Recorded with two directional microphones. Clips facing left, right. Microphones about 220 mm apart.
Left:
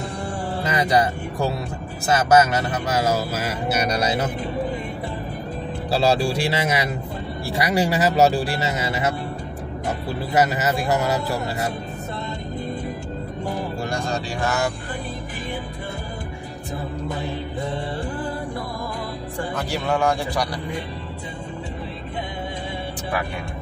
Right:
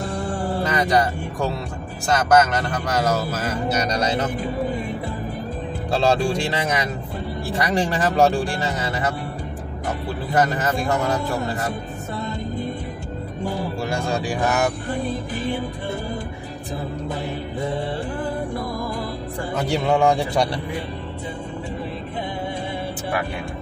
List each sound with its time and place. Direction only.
0.7 s speech: 10° left (ahead or behind)
5.9 s speech: 5° left (ahead or behind)
10.3 s speech: 5° left (ahead or behind)
13.8 s speech: 10° right (ahead or behind)
19.7 s a man's voice: 25° right (ahead or behind)